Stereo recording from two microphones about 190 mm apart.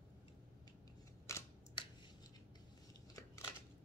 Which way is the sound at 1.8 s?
25° left (ahead or behind).